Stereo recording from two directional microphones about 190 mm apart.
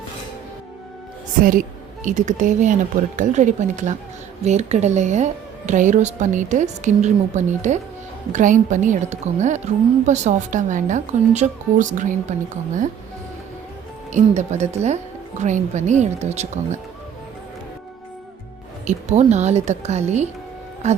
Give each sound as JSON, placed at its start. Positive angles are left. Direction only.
{"t": 2.0, "sound": "a woman's voice", "side_deg": -40}
{"t": 14.1, "sound": "a woman's voice", "side_deg": -35}
{"t": 18.9, "sound": "a woman's voice", "side_deg": -35}